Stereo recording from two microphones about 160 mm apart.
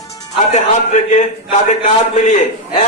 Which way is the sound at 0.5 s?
50° left (ahead or behind).